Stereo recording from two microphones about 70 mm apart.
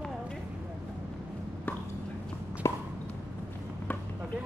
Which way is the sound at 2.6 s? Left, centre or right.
Left.